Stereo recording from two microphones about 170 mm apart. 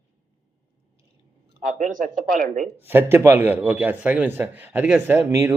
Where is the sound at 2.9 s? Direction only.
10° right (ahead or behind).